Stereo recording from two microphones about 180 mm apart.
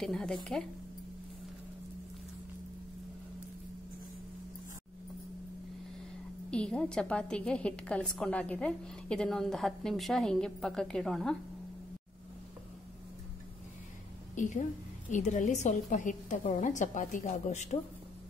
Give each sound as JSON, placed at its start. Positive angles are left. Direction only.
{"t": 0.0, "sound": "a woman's voice", "side_deg": 0}
{"t": 6.5, "sound": "a woman's voice", "side_deg": 5}
{"t": 14.3, "sound": "a woman's voice", "side_deg": 45}